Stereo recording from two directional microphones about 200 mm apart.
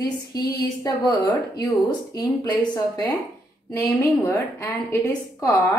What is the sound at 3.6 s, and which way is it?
A woman's voice, 10° left (ahead or behind).